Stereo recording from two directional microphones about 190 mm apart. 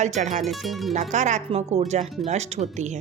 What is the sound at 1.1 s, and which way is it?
Speech, 40° right (ahead or behind).